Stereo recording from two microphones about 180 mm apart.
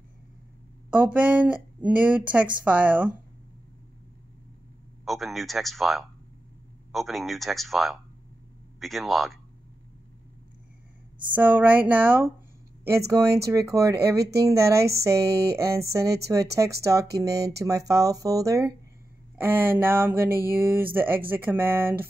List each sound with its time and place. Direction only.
0.8 s speech: 5° right (ahead or behind)
5.0 s a man's voice: centre (ahead or behind)
11.3 s speech: 10° right (ahead or behind)